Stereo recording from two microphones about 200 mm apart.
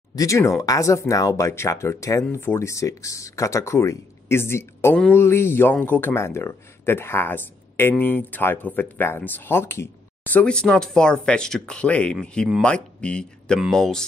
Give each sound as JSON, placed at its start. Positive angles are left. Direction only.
{"t": 0.1, "sound": "speech", "side_deg": 15}